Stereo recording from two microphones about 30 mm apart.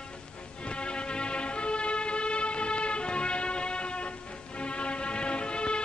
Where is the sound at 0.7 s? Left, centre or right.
Left.